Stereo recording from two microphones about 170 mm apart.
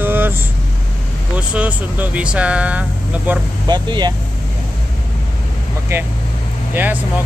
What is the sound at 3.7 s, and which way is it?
Speech, 25° right (ahead or behind).